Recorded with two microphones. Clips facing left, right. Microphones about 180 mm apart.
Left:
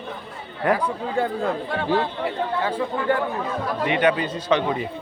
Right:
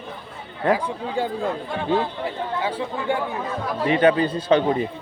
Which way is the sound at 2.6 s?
5° right (ahead or behind).